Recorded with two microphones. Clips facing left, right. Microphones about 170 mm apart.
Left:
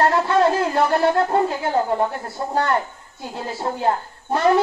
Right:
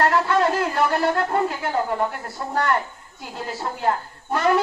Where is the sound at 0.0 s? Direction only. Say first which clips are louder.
Left 2 dB; 25° left (ahead or behind).